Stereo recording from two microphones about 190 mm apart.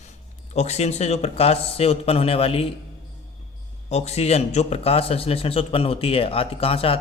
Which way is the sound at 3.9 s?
35° left (ahead or behind).